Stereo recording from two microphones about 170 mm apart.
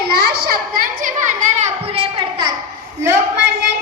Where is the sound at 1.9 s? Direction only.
30° right (ahead or behind).